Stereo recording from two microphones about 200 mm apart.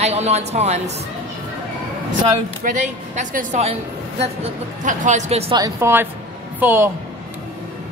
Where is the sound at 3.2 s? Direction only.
35° right (ahead or behind).